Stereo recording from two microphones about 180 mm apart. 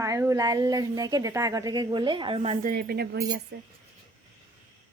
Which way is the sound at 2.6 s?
60° right (ahead or behind).